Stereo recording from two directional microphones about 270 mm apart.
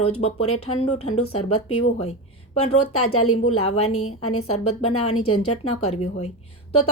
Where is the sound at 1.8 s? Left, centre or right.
Left.